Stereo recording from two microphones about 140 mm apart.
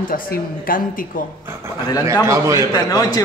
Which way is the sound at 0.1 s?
90° left.